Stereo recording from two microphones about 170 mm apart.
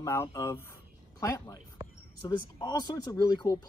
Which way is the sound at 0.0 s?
20° left (ahead or behind).